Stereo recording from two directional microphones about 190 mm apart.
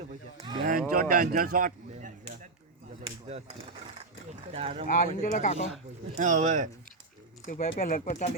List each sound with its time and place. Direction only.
0.6 s a sound: 45° right (ahead or behind)
4.5 s speech: 30° right (ahead or behind)
5.2 s speech: 40° left (ahead or behind)
6.1 s speech: 40° right (ahead or behind)
7.4 s speech: 40° left (ahead or behind)